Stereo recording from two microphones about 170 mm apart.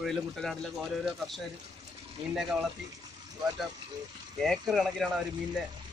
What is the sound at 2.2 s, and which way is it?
Speech, 30° right (ahead or behind).